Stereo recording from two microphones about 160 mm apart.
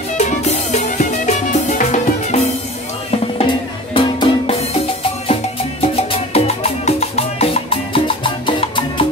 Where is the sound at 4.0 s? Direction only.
35° left (ahead or behind).